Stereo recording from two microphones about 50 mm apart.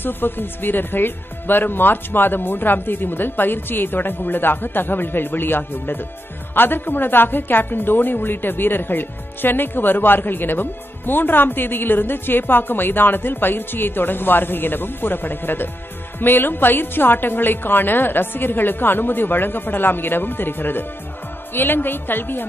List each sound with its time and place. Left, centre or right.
0.0 s a woman's voice: left